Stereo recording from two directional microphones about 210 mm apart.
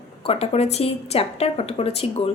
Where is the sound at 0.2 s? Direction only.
30° left (ahead or behind).